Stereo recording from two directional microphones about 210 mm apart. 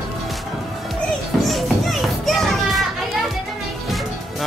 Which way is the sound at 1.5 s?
Centre (ahead or behind).